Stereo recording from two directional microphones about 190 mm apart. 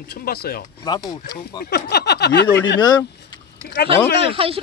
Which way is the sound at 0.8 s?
20° left (ahead or behind).